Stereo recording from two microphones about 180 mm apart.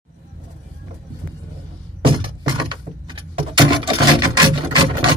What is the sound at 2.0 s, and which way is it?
Keys jangling, 25° right (ahead or behind).